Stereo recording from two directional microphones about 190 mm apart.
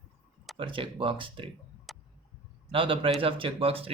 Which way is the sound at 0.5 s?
25° right (ahead or behind).